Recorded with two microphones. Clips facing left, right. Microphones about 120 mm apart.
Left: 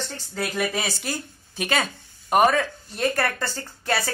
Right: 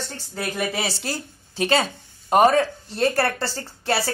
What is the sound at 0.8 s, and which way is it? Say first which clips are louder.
Speech: right 1 dB; 30° right (ahead or behind).